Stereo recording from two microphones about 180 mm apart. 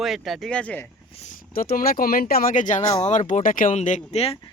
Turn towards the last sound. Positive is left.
turn(degrees=35)  # may be behind; listen again after turning